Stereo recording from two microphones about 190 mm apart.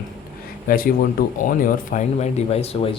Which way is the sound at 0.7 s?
45° left (ahead or behind).